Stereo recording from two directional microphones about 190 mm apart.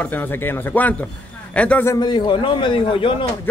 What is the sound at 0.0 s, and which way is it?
Speech, 10° left (ahead or behind).